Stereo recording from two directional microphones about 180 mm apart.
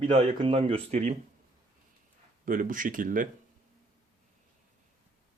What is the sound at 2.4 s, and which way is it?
Speech, 50° right (ahead or behind).